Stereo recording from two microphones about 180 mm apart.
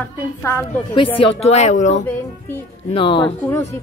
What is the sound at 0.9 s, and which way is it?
A woman's voice, 30° left (ahead or behind).